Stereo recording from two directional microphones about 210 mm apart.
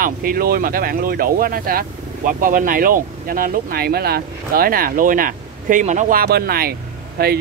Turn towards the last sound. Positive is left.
turn(degrees=-45)  # may be behind; listen again after turning